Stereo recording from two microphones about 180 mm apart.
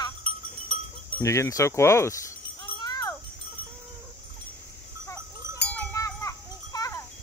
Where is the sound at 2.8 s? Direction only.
20° left (ahead or behind).